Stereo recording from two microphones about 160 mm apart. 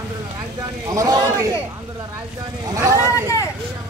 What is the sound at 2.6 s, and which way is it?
Speech, 20° right (ahead or behind).